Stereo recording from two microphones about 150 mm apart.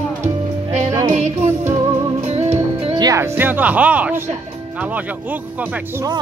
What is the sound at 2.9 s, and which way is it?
Music, 25° right (ahead or behind).